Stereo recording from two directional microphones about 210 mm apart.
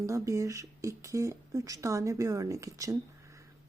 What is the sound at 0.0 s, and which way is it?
Speech, 15° right (ahead or behind).